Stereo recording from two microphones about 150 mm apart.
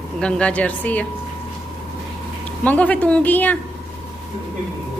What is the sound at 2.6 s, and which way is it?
Speech, 10° left (ahead or behind).